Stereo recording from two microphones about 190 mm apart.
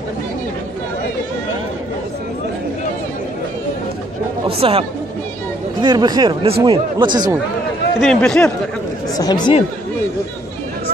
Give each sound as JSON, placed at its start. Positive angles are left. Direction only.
{"t": 4.5, "sound": "speech", "side_deg": -30}
{"t": 8.0, "sound": "speech", "side_deg": 5}
{"t": 9.1, "sound": "speech", "side_deg": 20}